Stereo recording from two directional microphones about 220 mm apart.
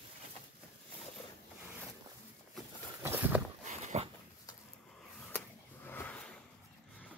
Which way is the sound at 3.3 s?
5° right (ahead or behind).